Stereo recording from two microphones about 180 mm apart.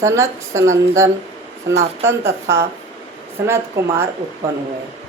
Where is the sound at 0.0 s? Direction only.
15° right (ahead or behind).